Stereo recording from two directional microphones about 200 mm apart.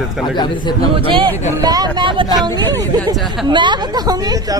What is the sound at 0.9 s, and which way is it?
A woman's voice, 25° right (ahead or behind).